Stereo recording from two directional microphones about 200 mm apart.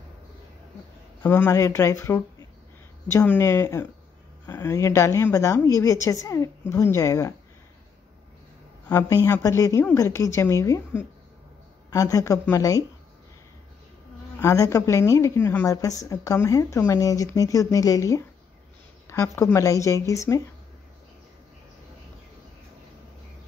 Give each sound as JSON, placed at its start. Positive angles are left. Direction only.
{"t": 1.2, "sound": "a woman's voice", "side_deg": 10}
{"t": 8.8, "sound": "a woman's voice", "side_deg": 15}
{"t": 14.4, "sound": "a woman's voice", "side_deg": 15}